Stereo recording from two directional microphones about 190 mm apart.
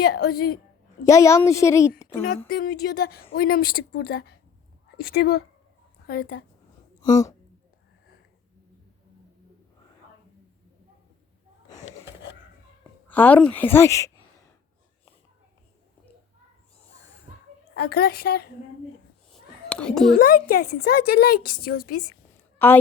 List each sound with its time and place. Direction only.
0.0 s a woman's voice: 55° left (ahead or behind)
1.0 s a woman's voice: 15° left (ahead or behind)
2.5 s a woman's voice: 50° left (ahead or behind)
7.1 s a woman's voice: 15° left (ahead or behind)
13.1 s a woman's voice: 10° left (ahead or behind)
17.7 s a woman's voice: 55° left (ahead or behind)
19.3 s a sound: 5° left (ahead or behind)
20.1 s a woman's voice: 45° left (ahead or behind)
22.5 s a woman's voice: 10° left (ahead or behind)